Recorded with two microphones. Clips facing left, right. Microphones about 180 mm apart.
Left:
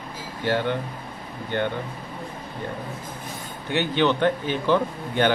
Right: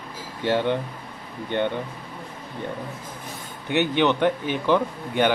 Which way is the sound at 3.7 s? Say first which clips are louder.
Right 1 dB; 15° right (ahead or behind).